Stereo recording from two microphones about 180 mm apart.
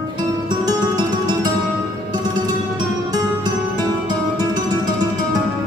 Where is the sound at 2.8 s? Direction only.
25° right (ahead or behind).